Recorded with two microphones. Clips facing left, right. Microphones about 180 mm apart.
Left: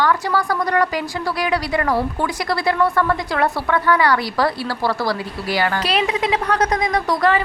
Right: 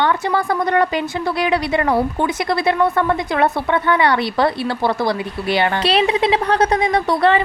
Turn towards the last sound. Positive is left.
turn(degrees=-30)  # may be behind; listen again after turning